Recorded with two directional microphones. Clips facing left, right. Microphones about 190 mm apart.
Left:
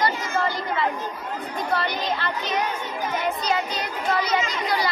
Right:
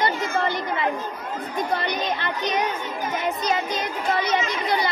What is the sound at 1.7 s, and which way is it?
A child's voice, 20° right (ahead or behind).